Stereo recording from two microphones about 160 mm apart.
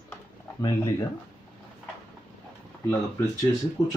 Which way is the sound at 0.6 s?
20° left (ahead or behind).